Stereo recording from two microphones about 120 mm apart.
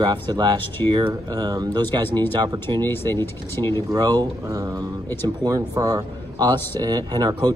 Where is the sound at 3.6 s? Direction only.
40° right (ahead or behind).